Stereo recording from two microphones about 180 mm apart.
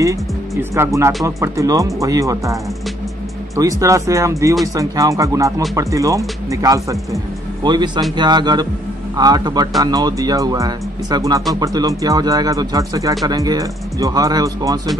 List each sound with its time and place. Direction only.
0.0 s speech: 15° right (ahead or behind)